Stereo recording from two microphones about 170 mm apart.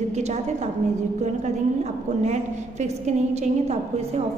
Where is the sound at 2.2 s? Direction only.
45° right (ahead or behind).